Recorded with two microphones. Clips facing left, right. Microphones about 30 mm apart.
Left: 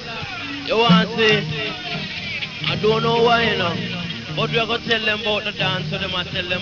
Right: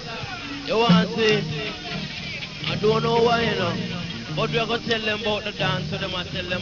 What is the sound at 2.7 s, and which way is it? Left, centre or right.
Speech, left.